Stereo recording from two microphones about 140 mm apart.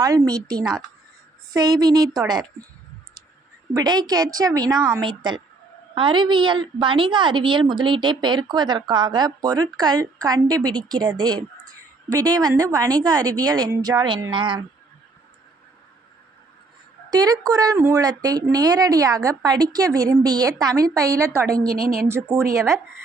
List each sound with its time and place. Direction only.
0.0 s a woman's voice: 25° right (ahead or behind)
3.8 s a woman's voice: 30° right (ahead or behind)
17.1 s a woman's voice: 25° right (ahead or behind)
21.7 s a woman's voice: 90° right
22.0 s a woman's voice: 20° right (ahead or behind)